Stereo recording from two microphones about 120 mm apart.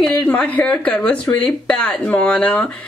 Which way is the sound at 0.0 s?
15° left (ahead or behind).